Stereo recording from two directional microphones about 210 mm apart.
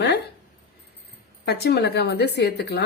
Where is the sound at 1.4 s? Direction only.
50° left (ahead or behind).